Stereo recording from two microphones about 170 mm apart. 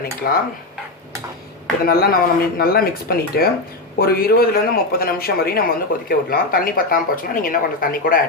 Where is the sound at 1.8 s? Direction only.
60° left (ahead or behind).